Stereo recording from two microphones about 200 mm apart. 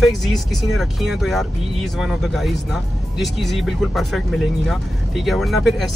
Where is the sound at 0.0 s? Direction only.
Centre (ahead or behind).